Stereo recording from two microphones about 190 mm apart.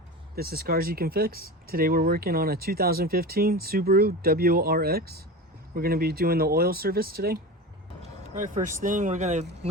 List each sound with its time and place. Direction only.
0.3 s speech: 55° right (ahead or behind)
8.4 s speech: 40° right (ahead or behind)